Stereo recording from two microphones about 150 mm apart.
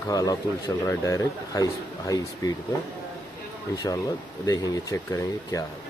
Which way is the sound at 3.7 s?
20° left (ahead or behind).